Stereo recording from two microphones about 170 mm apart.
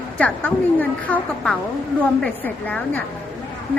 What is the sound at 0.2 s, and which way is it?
A woman's voice, 10° left (ahead or behind).